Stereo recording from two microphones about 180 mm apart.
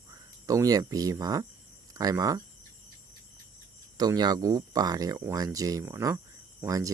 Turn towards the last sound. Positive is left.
turn(degrees=-20)  # may be behind; listen again after turning